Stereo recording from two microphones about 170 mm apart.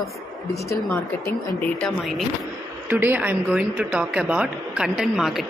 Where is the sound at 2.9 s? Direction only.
10° right (ahead or behind).